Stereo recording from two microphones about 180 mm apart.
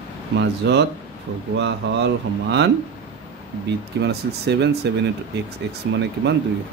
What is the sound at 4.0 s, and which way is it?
Speech, 70° right (ahead or behind).